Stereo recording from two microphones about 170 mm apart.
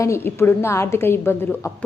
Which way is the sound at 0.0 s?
15° left (ahead or behind).